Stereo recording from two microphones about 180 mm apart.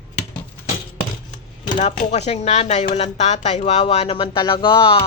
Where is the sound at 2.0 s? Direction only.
40° left (ahead or behind).